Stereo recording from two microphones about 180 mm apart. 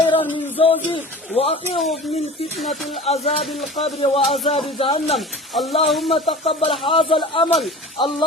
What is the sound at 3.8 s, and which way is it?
Speech, 35° left (ahead or behind).